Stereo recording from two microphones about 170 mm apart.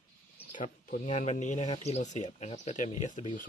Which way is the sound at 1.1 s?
40° left (ahead or behind).